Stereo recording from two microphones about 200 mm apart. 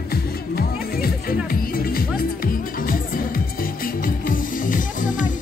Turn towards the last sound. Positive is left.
turn(degrees=40)  # may be behind; listen again after turning